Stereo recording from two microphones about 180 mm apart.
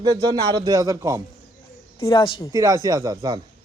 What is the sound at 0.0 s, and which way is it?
Speech, 20° right (ahead or behind).